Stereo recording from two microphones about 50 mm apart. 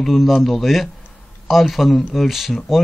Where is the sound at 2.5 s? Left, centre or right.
Centre.